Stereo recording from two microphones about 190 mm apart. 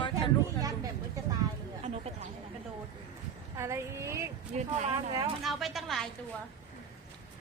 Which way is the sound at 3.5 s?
15° right (ahead or behind).